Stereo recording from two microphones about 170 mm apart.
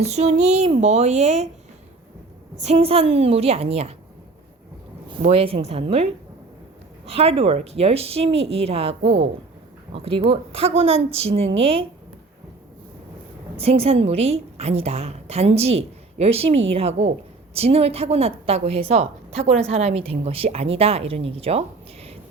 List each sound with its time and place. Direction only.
0.0 s a woman's voice: 40° right (ahead or behind)
2.6 s a woman's voice: 40° right (ahead or behind)
5.2 s a woman's voice: 35° right (ahead or behind)
7.1 s a woman's voice: 35° right (ahead or behind)
13.6 s a woman's voice: 35° right (ahead or behind)